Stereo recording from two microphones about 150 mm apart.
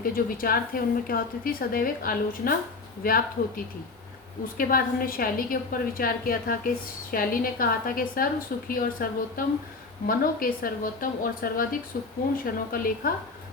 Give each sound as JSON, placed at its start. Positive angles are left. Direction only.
{"t": 0.0, "sound": "a woman's voice", "side_deg": 75}